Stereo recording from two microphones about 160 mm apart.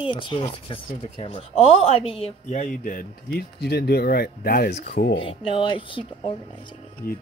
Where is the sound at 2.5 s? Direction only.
55° left (ahead or behind); by 4.8 s 80° left.